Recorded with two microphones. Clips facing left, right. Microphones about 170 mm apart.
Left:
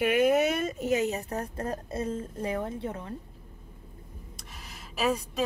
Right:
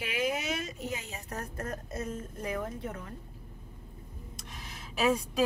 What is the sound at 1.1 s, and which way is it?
A woman's voice, 30° left (ahead or behind).